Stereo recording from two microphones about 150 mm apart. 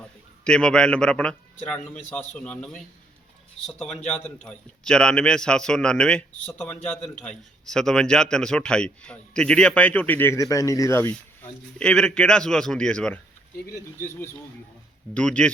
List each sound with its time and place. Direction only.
0.4 s a man's voice: 5° left (ahead or behind)
11.8 s a man's voice: 5° left (ahead or behind)
14.0 s a man's voice: 15° left (ahead or behind)